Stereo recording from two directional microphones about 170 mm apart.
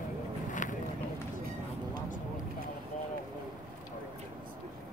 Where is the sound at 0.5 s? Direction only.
50° left (ahead or behind).